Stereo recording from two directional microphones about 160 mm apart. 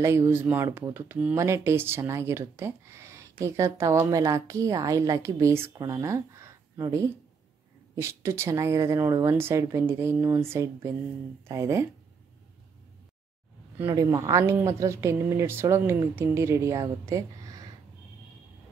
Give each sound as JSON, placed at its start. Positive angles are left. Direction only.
{"t": 0.0, "sound": "speech", "side_deg": -15}
{"t": 13.8, "sound": "speech", "side_deg": -20}